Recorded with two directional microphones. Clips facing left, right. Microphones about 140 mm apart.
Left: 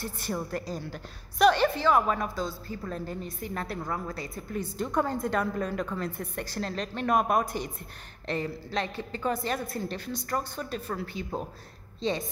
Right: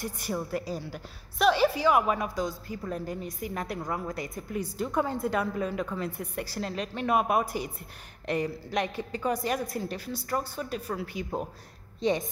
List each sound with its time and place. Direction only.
0.0 s a woman's voice: 10° right (ahead or behind)